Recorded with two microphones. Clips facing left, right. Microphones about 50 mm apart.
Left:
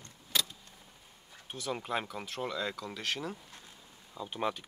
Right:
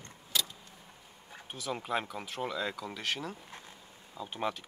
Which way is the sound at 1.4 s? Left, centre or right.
Centre.